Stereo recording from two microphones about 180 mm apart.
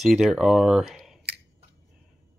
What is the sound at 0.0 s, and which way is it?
Speech, centre (ahead or behind).